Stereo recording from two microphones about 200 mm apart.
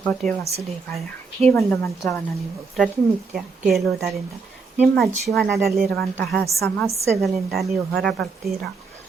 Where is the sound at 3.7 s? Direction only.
Centre (ahead or behind).